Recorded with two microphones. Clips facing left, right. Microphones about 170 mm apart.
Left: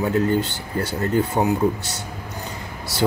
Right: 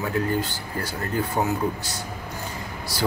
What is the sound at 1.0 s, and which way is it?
Speech, 20° left (ahead or behind).